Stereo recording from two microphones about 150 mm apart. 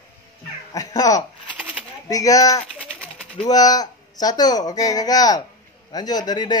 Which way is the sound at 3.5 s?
25° left (ahead or behind).